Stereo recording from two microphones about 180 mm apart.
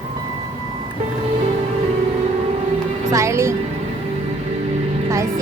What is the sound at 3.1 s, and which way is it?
Speech, 15° right (ahead or behind).